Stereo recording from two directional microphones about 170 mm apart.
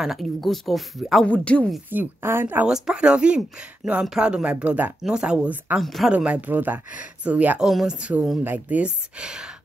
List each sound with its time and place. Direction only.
0.0 s speech: centre (ahead or behind)
1.9 s speech: 15° right (ahead or behind)